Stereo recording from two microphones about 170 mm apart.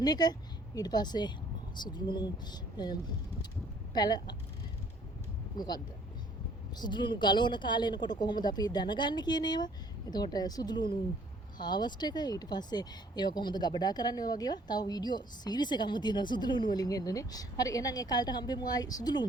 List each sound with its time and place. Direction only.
0.0 s speech: 25° left (ahead or behind)
3.9 s speech: 25° left (ahead or behind)
5.5 s speech: 25° left (ahead or behind)